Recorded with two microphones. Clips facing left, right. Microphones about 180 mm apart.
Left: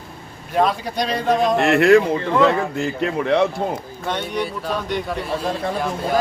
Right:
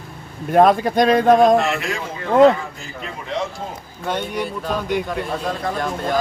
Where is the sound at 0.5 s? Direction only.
50° right (ahead or behind).